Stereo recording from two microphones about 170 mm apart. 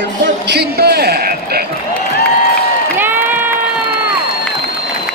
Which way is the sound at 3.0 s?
10° right (ahead or behind).